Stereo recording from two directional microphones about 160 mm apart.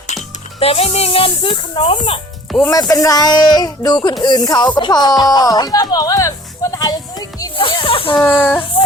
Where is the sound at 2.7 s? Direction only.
20° left (ahead or behind).